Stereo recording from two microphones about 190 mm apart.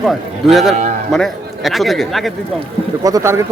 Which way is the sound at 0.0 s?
Centre (ahead or behind).